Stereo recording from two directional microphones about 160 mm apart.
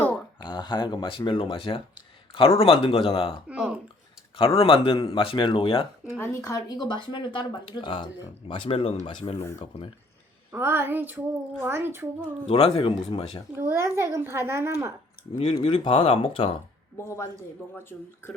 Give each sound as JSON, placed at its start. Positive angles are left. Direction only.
{"t": 0.4, "sound": "speech", "side_deg": 30}
{"t": 3.5, "sound": "a child's voice", "side_deg": -10}
{"t": 4.4, "sound": "speech", "side_deg": 35}
{"t": 6.1, "sound": "speech", "side_deg": 15}
{"t": 10.5, "sound": "a child's voice", "side_deg": -15}
{"t": 12.5, "sound": "speech", "side_deg": 40}
{"t": 13.6, "sound": "a child's voice", "side_deg": -15}
{"t": 15.4, "sound": "speech", "side_deg": 30}
{"t": 17.0, "sound": "speech", "side_deg": 15}